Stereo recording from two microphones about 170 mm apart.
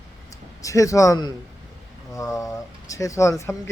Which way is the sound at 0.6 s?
20° left (ahead or behind).